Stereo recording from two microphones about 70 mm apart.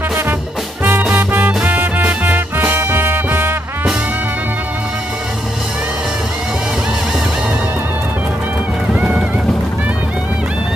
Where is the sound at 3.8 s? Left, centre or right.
Centre.